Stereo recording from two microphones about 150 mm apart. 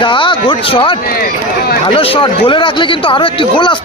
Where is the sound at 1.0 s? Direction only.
90° left.